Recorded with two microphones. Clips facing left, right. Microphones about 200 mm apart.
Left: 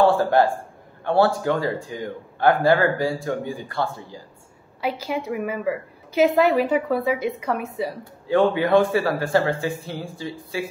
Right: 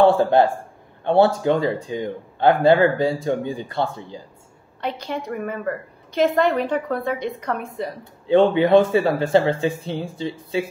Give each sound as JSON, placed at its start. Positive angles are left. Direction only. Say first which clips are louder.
{"t": 0.0, "sound": "speech", "louder": "right 2 dB", "side_deg": -20}
{"t": 4.8, "sound": "a woman's voice", "louder": "left 1 dB", "side_deg": 5}
{"t": 8.0, "sound": "speech", "louder": "right 4 dB", "side_deg": -20}